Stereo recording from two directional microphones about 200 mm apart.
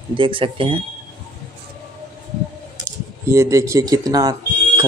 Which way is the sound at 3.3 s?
15° right (ahead or behind).